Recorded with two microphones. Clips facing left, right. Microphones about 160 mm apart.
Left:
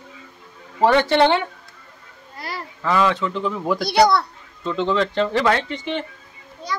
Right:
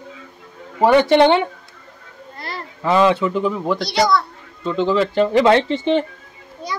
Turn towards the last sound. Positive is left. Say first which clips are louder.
# even
turn(degrees=-10)  # may be behind; listen again after turning